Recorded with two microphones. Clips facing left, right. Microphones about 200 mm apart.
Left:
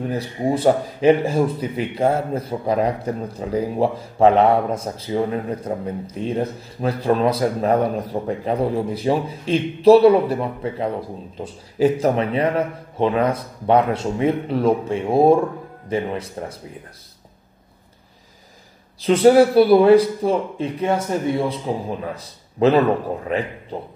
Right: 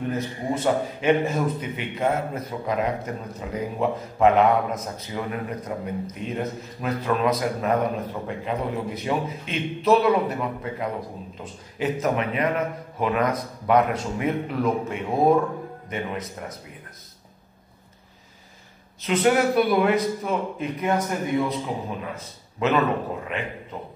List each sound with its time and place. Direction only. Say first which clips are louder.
0.1 s a man's voice: left 5 dB; 35° left (ahead or behind)
18.9 s a man's voice: left 8 dB; 35° left (ahead or behind)